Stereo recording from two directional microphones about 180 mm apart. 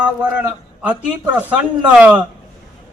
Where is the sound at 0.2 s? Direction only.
5° right (ahead or behind).